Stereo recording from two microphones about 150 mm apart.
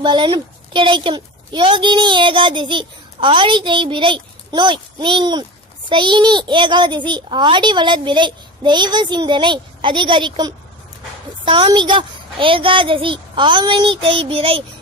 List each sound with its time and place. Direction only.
0.0 s a woman's voice: 30° right (ahead or behind)